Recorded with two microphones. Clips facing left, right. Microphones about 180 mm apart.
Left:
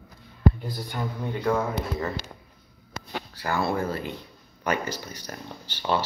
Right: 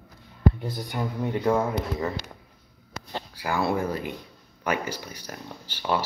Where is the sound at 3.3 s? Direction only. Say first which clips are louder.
Right 1 dB; 10° right (ahead or behind).